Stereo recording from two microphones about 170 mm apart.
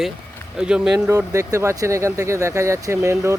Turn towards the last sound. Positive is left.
turn(degrees=-15)  # may be behind; listen again after turning